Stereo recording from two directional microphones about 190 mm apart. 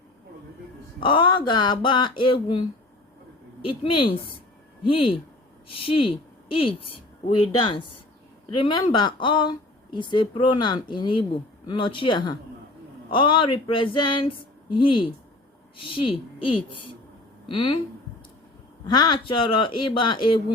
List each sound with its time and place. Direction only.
0.9 s speech: 25° left (ahead or behind)
3.6 s speech: 30° left (ahead or behind)
8.5 s speech: 25° left (ahead or behind)
17.5 s speech: 30° left (ahead or behind)
18.9 s speech: 20° left (ahead or behind)